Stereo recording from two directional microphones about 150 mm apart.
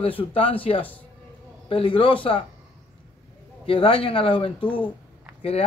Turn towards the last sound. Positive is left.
turn(degrees=40)  # may be behind; listen again after turning